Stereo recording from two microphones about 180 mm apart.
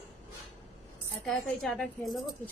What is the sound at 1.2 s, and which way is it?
A woman's voice, centre (ahead or behind).